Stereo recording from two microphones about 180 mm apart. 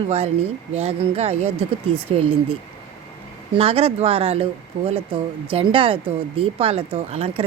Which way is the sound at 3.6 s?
35° right (ahead or behind).